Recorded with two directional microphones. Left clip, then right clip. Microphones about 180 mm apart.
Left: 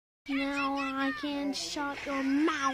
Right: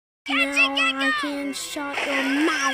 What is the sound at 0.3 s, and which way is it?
Speech, 50° right (ahead or behind).